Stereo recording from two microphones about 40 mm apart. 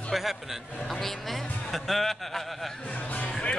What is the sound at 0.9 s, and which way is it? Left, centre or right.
Speech, centre.